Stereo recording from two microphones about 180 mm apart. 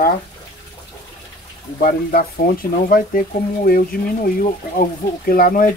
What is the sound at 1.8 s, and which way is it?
Speech, 55° left (ahead or behind).